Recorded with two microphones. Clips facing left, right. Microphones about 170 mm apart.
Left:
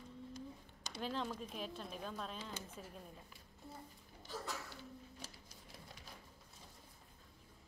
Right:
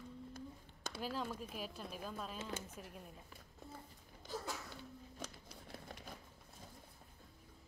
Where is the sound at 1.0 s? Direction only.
5° right (ahead or behind).